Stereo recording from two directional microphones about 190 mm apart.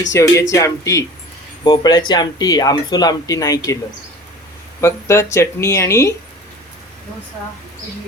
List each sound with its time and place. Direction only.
0.1 s speech: 15° left (ahead or behind)
4.8 s speech: 15° left (ahead or behind)